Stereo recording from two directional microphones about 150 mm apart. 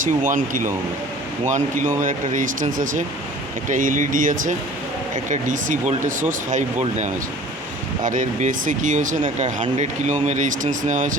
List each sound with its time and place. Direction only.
0.0 s speech: 60° right (ahead or behind)